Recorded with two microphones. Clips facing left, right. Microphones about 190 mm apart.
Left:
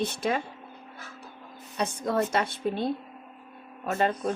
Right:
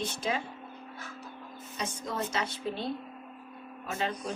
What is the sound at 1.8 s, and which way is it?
A woman's voice, 60° left (ahead or behind).